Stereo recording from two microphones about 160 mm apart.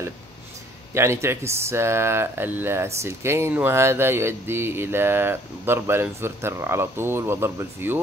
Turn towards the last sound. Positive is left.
turn(degrees=-15)  # may be behind; listen again after turning